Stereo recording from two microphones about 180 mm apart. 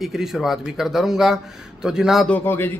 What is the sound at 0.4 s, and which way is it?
Speech, centre (ahead or behind).